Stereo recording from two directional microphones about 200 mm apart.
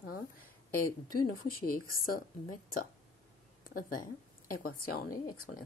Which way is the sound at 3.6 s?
45° left (ahead or behind).